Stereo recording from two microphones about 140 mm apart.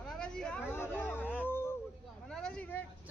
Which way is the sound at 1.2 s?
10° left (ahead or behind).